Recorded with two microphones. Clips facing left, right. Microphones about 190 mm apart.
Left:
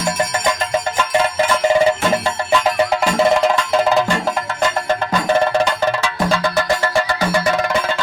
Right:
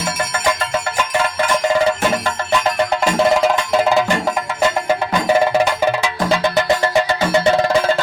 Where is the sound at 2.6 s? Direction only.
5° left (ahead or behind).